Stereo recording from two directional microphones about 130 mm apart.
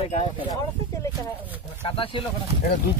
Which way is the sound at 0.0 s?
55° left (ahead or behind).